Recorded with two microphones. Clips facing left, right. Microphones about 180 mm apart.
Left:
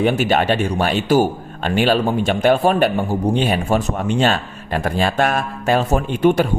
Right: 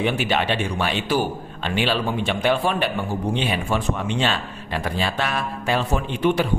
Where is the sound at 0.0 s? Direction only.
45° left (ahead or behind).